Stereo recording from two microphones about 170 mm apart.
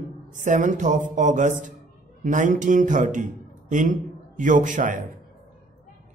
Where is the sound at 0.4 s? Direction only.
45° right (ahead or behind).